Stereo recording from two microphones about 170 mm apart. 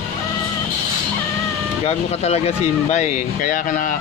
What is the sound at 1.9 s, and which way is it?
Speech, 40° left (ahead or behind).